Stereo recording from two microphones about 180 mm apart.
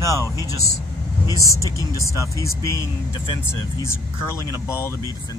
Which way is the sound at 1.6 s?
20° right (ahead or behind).